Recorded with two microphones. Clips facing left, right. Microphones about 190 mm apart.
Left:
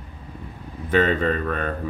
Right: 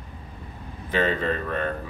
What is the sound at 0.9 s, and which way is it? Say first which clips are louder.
Speech: left 4 dB; 55° left (ahead or behind).